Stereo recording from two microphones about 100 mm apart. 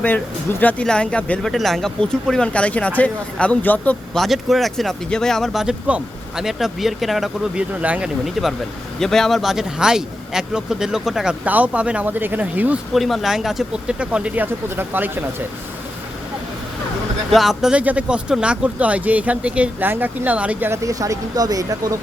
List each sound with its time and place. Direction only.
0.6 s speech: 15° left (ahead or behind)
4.1 s speech: centre (ahead or behind)
7.8 s speech: 15° right (ahead or behind)
8.2 s speech: centre (ahead or behind)
12.9 s speech: centre (ahead or behind); by 15.4 s 20° right (ahead or behind)
17.3 s speech: 5° right (ahead or behind)
20.7 s speech: 35° right (ahead or behind)